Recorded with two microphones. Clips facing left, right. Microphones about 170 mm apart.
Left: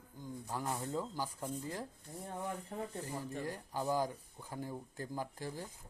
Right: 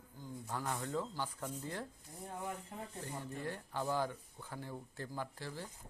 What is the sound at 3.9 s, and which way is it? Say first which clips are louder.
Speech: left 2 dB; 40° left (ahead or behind).